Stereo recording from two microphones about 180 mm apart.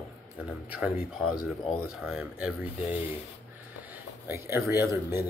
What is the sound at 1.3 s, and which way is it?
Speech, 20° left (ahead or behind).